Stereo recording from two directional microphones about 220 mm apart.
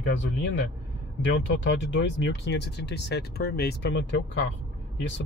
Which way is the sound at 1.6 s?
55° left (ahead or behind).